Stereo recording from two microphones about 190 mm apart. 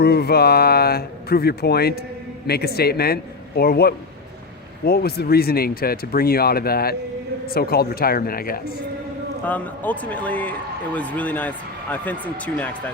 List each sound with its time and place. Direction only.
0.0 s speech: 55° left (ahead or behind)
9.5 s a man's voice: 10° left (ahead or behind)